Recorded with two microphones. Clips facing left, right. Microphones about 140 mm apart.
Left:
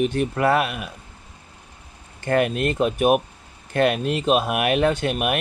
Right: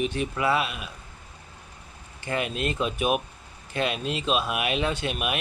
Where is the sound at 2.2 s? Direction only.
55° left (ahead or behind).